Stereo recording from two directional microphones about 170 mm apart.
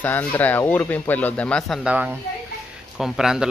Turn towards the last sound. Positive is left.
turn(degrees=-5)  # may be behind; listen again after turning